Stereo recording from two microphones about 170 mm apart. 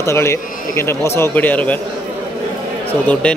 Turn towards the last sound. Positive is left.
turn(degrees=10)  # may be behind; listen again after turning